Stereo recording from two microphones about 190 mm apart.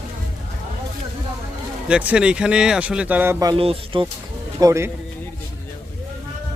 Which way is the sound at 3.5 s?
30° right (ahead or behind).